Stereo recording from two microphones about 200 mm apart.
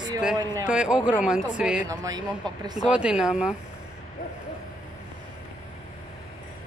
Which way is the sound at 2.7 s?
5° right (ahead or behind).